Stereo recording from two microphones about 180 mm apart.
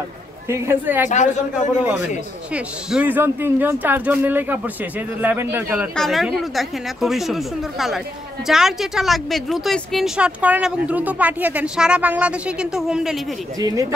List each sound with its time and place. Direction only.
0.5 s speech: 10° right (ahead or behind)
1.0 s a man's voice: 40° left (ahead or behind)
2.5 s speech: 5° right (ahead or behind)
5.9 s speech: centre (ahead or behind)
13.6 s speech: 20° right (ahead or behind)